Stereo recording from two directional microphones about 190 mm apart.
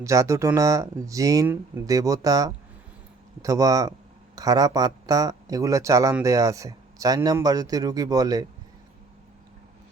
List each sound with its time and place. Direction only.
0.0 s speech: 15° right (ahead or behind)